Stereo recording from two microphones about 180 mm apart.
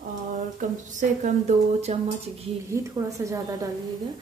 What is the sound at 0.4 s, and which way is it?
Speech, 45° right (ahead or behind).